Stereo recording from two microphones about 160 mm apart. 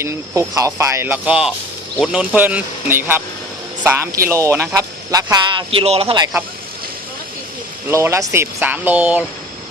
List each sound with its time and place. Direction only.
0.0 s speech: 20° right (ahead or behind); by 6.2 s 35° right (ahead or behind)
7.9 s speech: 15° right (ahead or behind)